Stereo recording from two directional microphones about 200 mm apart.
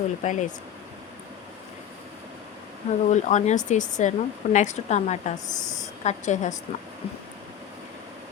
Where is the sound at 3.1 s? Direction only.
35° left (ahead or behind).